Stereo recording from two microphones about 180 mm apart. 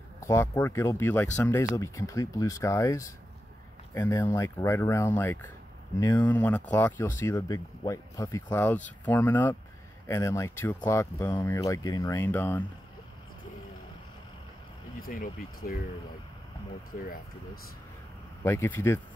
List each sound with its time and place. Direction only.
0.2 s speech: 15° left (ahead or behind)
15.0 s speech: 55° left (ahead or behind)
18.4 s speech: 15° left (ahead or behind)